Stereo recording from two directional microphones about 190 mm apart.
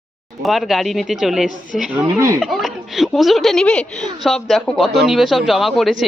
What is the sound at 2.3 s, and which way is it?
Speech, centre (ahead or behind).